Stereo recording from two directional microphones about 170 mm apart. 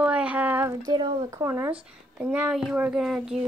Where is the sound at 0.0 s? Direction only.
10° right (ahead or behind).